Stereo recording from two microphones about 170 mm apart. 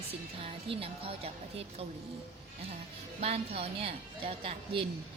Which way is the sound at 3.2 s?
35° right (ahead or behind).